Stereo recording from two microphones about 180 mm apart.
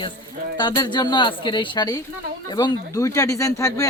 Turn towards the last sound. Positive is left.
turn(degrees=20)  # may be behind; listen again after turning